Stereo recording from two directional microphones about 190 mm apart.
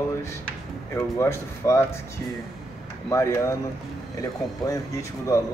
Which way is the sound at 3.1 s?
15° left (ahead or behind).